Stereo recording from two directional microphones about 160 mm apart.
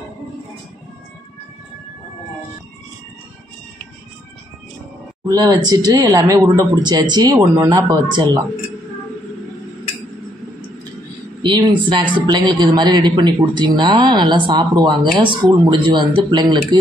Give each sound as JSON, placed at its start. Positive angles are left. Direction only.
{"t": 5.2, "sound": "speech", "side_deg": -25}
{"t": 11.5, "sound": "speech", "side_deg": -25}